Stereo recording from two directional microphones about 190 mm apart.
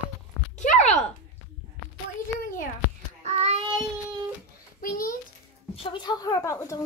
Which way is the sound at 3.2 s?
35° right (ahead or behind).